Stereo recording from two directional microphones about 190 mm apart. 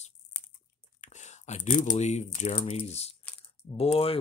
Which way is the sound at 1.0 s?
40° left (ahead or behind).